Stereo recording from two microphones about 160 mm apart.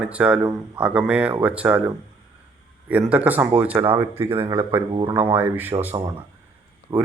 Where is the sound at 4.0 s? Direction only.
15° right (ahead or behind).